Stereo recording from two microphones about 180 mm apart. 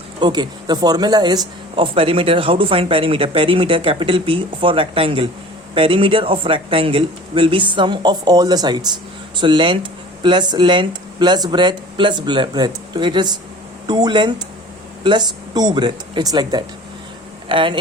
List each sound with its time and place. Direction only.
0.2 s speech: 25° right (ahead or behind)